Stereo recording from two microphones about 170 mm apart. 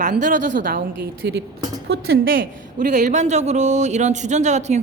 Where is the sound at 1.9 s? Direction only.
80° right.